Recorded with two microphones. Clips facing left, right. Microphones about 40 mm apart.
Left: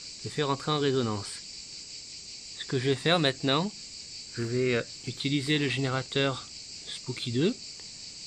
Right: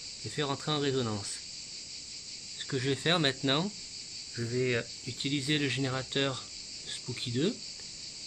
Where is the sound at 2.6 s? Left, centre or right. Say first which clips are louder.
Left 4 dB; centre.